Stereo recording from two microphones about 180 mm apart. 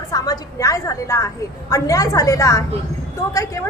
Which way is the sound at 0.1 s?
20° left (ahead or behind).